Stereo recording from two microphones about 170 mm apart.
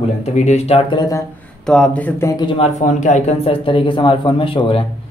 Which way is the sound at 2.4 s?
30° left (ahead or behind).